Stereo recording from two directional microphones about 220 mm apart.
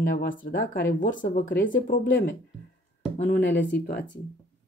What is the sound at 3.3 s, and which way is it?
Speech, 55° left (ahead or behind).